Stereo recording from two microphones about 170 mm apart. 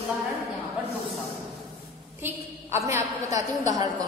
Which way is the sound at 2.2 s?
15° right (ahead or behind).